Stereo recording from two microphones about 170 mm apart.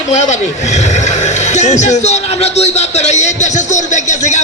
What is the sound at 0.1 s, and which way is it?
Speech, 45° left (ahead or behind).